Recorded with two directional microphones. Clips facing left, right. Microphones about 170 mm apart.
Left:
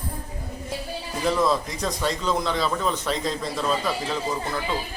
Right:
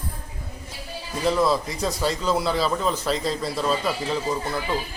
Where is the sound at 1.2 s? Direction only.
Centre (ahead or behind).